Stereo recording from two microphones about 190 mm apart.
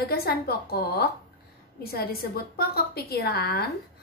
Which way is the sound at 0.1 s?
55° left (ahead or behind).